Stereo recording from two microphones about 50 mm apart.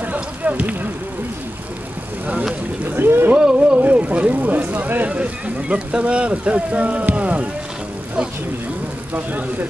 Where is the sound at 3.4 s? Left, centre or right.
Centre.